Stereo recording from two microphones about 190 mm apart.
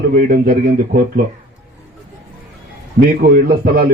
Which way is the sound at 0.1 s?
50° right (ahead or behind).